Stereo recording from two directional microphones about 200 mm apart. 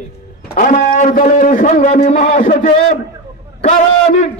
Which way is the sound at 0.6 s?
40° left (ahead or behind).